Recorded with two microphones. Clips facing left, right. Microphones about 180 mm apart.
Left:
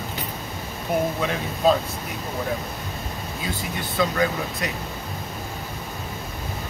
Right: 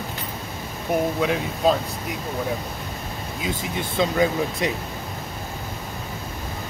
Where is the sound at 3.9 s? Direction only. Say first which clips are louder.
Right 2 dB; 25° right (ahead or behind).